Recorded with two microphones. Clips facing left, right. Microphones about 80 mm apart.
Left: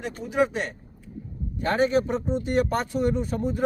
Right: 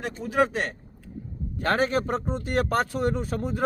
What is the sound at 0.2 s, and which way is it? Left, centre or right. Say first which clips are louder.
Speech: even; right.